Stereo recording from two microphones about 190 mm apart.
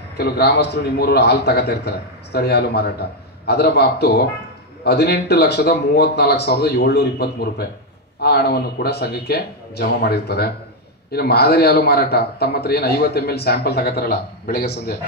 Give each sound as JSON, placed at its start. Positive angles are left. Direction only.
{"t": 0.2, "sound": "a man's voice", "side_deg": 60}